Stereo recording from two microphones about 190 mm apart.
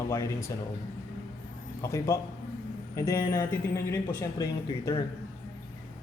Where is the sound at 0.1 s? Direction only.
15° left (ahead or behind).